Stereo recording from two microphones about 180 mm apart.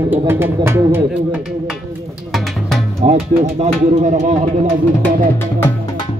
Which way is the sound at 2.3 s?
Centre (ahead or behind).